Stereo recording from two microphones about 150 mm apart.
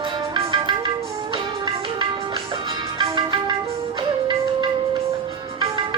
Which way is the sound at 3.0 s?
30° right (ahead or behind).